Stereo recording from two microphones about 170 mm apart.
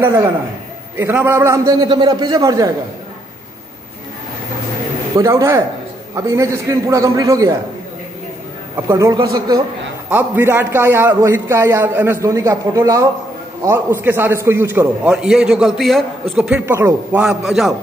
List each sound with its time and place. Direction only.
0.0 s a man's voice: 15° right (ahead or behind)
5.1 s a man's voice: 20° right (ahead or behind)
8.8 s a man's voice: 20° right (ahead or behind)
10.0 s a man's voice: 10° right (ahead or behind)